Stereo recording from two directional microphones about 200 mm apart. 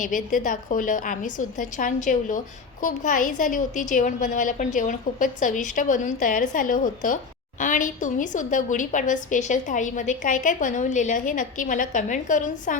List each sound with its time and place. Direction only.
0.0 s a woman's voice: 40° left (ahead or behind)